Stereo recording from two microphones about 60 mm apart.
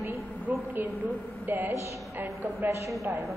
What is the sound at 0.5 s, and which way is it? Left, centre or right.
A woman's voice, right.